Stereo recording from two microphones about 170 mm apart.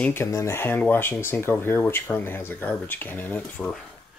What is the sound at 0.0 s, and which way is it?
Speech, 15° left (ahead or behind).